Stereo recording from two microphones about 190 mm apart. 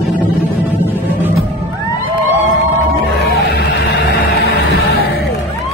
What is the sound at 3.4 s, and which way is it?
Music, 65° left (ahead or behind).